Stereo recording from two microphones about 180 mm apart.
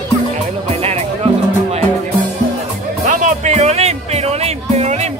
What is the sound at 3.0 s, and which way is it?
Music, 40° right (ahead or behind).